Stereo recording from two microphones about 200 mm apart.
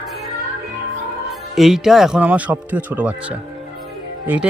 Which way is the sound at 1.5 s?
Centre (ahead or behind).